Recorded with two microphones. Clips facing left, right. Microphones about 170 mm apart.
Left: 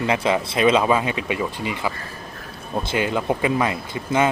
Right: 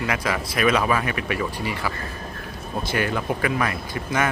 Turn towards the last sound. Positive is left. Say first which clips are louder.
# left 4 dB
turn(degrees=20)  # may be behind; listen again after turning